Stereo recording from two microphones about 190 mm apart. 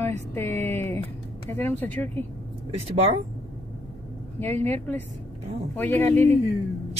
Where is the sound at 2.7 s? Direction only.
30° right (ahead or behind).